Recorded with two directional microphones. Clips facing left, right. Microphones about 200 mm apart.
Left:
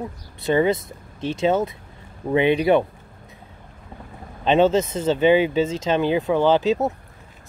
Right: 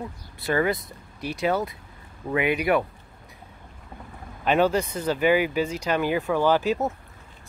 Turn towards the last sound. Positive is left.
turn(degrees=20)  # may be behind; listen again after turning